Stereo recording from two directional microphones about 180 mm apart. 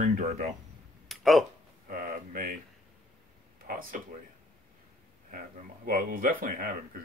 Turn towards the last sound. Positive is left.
turn(degrees=-50)  # may be behind; listen again after turning